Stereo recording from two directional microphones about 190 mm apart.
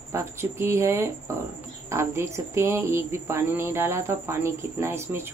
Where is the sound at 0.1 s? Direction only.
15° right (ahead or behind).